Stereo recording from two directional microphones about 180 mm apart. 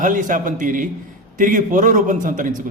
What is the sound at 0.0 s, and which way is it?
A man's voice, 45° right (ahead or behind).